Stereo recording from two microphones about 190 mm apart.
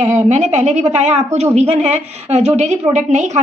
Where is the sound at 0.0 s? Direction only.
35° right (ahead or behind).